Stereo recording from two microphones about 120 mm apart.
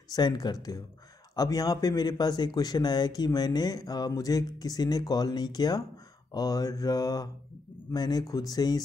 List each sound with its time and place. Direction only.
0.1 s speech: 35° left (ahead or behind)